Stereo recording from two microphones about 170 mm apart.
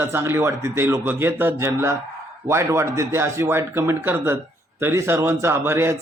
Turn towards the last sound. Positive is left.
turn(degrees=-15)  # may be behind; listen again after turning